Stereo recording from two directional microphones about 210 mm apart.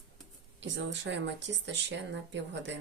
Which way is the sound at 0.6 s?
60° right (ahead or behind).